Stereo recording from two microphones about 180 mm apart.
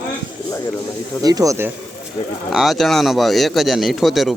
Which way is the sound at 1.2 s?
20° right (ahead or behind).